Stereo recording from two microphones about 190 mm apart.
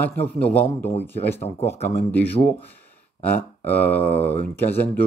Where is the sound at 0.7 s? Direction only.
35° left (ahead or behind).